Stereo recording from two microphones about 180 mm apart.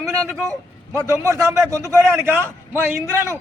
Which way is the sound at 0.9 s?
15° right (ahead or behind).